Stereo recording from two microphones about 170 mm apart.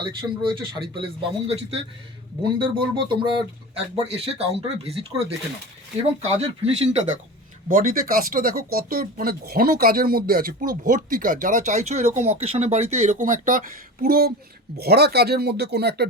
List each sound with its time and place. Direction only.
0.0 s speech: 30° right (ahead or behind)
6.7 s speech: 40° right (ahead or behind)
7.7 s speech: 55° right (ahead or behind); by 16.0 s 70° right (ahead or behind)